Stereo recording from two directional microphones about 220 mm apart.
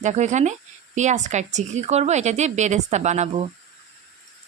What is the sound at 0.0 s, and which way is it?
Speech, 35° right (ahead or behind).